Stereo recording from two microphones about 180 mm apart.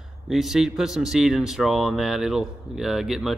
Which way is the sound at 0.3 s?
Centre (ahead or behind).